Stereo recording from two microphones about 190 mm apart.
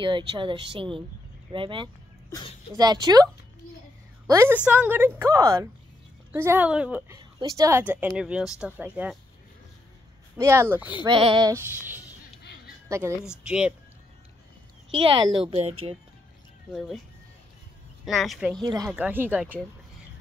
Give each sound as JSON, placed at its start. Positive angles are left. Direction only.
{"t": 0.0, "sound": "speech", "side_deg": -25}
{"t": 4.3, "sound": "a woman's voice", "side_deg": -15}
{"t": 7.3, "sound": "a woman's voice", "side_deg": -20}
{"t": 10.3, "sound": "a woman's voice", "side_deg": -15}
{"t": 11.1, "sound": "speech", "side_deg": -25}
{"t": 11.5, "sound": "a woman's voice", "side_deg": -10}
{"t": 15.0, "sound": "a woman's voice", "side_deg": -25}
{"t": 18.0, "sound": "speech", "side_deg": 0}
{"t": 18.6, "sound": "speech", "side_deg": -20}
{"t": 18.9, "sound": "a woman's voice", "side_deg": -10}